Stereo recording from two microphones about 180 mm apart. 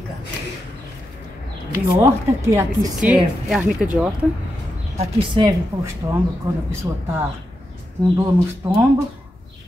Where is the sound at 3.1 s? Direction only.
5° right (ahead or behind).